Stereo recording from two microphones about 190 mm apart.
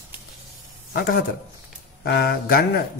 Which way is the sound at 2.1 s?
55° left (ahead or behind).